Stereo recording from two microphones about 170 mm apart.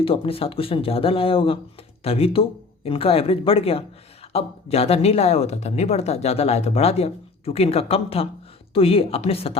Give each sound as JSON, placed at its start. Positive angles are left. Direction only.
{"t": 0.0, "sound": "a woman's voice", "side_deg": 35}